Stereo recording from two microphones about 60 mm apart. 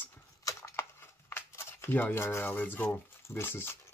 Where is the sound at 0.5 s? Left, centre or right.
Left.